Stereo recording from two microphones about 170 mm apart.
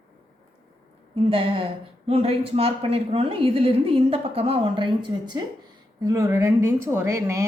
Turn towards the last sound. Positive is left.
turn(degrees=-15)  # may be behind; listen again after turning